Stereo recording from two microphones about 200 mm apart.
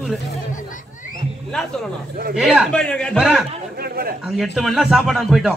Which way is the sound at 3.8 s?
50° right (ahead or behind).